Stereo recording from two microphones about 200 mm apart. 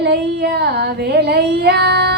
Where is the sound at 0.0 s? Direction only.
55° right (ahead or behind).